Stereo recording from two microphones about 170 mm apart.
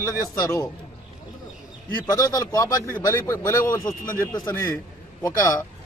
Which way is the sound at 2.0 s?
20° left (ahead or behind).